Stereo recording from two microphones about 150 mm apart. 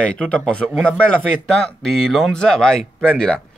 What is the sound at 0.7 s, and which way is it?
Speech, 10° right (ahead or behind).